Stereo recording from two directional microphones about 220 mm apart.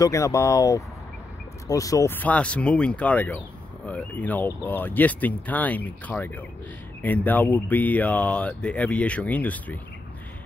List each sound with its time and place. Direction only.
0.0 s speech: 15° left (ahead or behind)